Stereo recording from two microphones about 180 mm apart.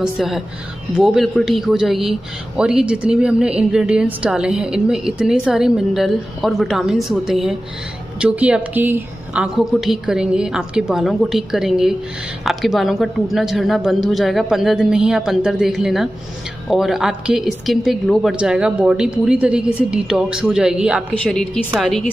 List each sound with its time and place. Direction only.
0.0 s a man's voice: centre (ahead or behind)